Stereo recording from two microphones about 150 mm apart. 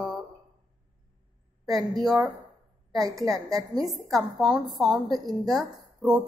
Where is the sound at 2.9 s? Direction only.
25° right (ahead or behind).